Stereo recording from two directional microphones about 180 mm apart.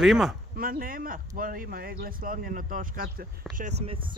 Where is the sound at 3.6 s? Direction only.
40° right (ahead or behind).